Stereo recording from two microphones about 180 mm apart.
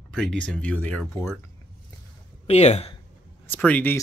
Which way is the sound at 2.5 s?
35° left (ahead or behind).